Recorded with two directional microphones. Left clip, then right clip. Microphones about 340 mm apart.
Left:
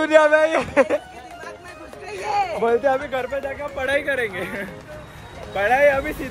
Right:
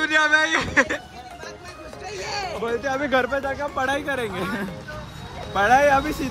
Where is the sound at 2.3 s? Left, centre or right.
Centre.